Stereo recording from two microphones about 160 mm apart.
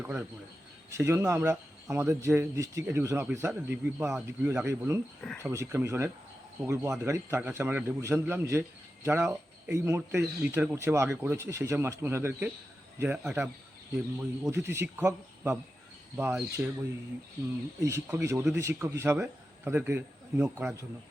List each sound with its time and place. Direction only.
0.0 s speech: 10° right (ahead or behind)
14.5 s speech: 15° right (ahead or behind)
17.7 s speech: 20° right (ahead or behind)